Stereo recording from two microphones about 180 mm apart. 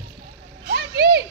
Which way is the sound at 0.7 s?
60° right (ahead or behind).